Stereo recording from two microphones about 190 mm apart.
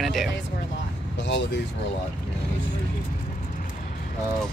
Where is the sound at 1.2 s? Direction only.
65° left (ahead or behind).